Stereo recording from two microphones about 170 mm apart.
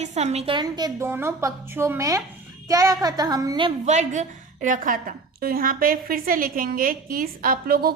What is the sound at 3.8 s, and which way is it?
A woman's voice, 45° right (ahead or behind).